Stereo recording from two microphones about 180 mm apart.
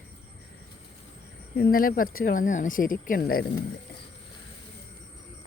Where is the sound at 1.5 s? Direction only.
55° left (ahead or behind).